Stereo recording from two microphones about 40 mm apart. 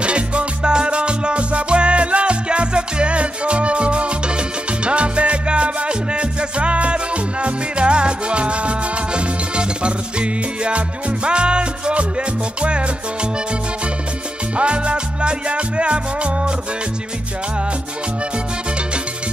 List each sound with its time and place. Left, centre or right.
0.0 s music: right
14.6 s music: right